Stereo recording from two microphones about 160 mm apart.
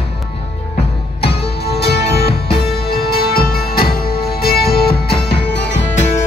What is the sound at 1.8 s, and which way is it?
Music, 85° left.